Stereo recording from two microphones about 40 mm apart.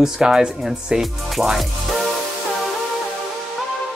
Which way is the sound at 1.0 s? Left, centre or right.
Centre.